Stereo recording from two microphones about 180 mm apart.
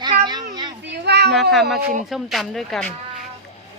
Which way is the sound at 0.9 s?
65° right (ahead or behind).